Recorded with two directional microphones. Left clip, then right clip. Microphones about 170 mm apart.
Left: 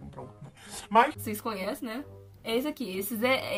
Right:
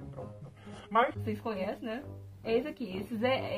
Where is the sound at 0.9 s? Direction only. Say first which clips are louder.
Left 5 dB; 30° left (ahead or behind).